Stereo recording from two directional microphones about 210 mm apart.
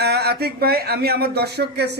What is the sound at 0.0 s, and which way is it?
Speech, 50° right (ahead or behind).